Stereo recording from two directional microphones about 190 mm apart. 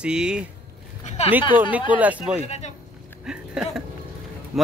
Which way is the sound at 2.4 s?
35° left (ahead or behind).